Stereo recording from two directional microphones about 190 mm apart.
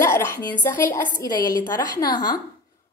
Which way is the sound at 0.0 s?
15° left (ahead or behind).